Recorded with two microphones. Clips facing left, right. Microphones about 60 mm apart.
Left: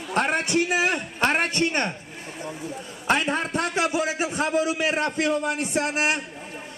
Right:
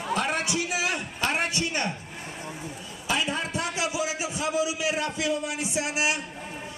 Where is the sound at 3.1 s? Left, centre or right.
Left.